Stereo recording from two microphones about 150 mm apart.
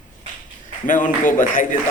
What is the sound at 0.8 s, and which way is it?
Speech, 60° left (ahead or behind).